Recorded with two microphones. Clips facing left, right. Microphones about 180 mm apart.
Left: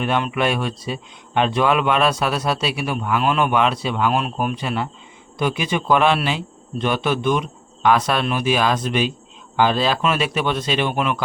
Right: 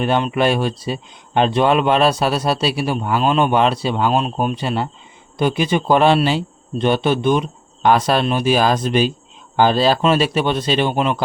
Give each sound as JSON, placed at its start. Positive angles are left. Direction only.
{"t": 0.0, "sound": "speech", "side_deg": -30}